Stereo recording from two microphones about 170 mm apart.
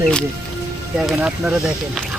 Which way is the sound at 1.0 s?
5° right (ahead or behind).